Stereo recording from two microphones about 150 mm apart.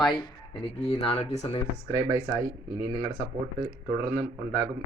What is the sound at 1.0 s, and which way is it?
Speech, 45° left (ahead or behind).